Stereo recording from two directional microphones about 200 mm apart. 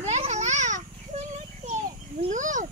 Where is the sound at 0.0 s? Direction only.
35° right (ahead or behind).